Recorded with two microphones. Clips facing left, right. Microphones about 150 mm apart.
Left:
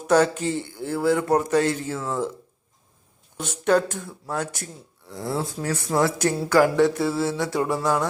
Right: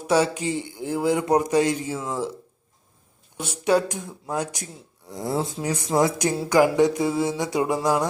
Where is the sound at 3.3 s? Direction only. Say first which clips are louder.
Even; 10° right (ahead or behind).